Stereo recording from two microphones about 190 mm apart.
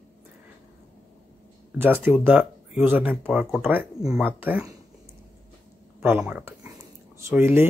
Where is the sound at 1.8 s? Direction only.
10° right (ahead or behind).